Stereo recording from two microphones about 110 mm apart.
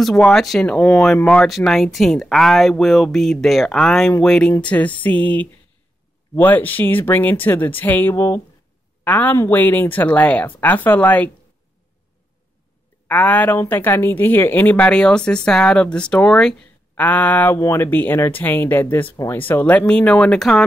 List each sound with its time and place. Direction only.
0.0 s speech: 5° left (ahead or behind)
13.1 s speech: 15° left (ahead or behind)